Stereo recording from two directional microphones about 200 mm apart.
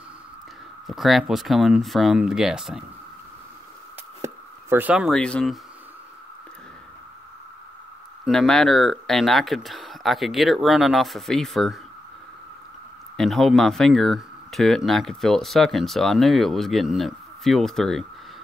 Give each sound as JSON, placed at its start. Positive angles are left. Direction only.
{"t": 0.8, "sound": "speech", "side_deg": 0}
{"t": 4.2, "sound": "speech", "side_deg": -10}
{"t": 8.3, "sound": "speech", "side_deg": 0}
{"t": 13.2, "sound": "speech", "side_deg": 0}